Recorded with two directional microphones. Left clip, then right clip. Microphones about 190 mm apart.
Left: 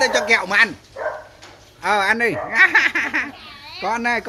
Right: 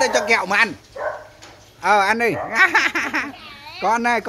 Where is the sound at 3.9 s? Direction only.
25° right (ahead or behind).